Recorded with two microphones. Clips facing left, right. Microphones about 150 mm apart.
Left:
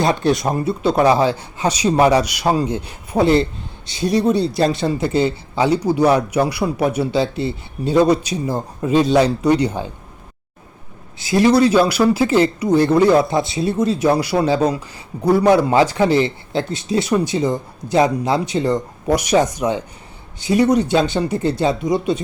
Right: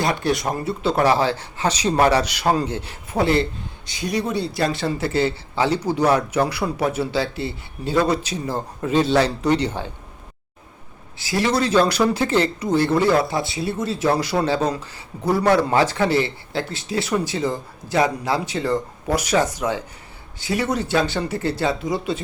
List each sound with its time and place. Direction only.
0.0 s speech: 25° left (ahead or behind)
11.2 s speech: 20° left (ahead or behind)